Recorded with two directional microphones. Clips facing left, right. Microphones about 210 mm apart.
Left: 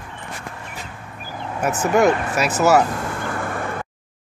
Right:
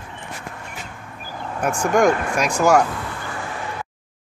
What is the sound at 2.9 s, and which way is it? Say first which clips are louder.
Vehicle: left 4 dB; 45° left (ahead or behind).